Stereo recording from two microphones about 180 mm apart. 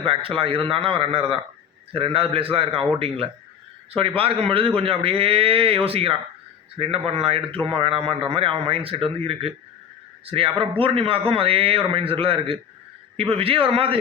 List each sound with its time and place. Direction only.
0.0 s a man's voice: 30° right (ahead or behind)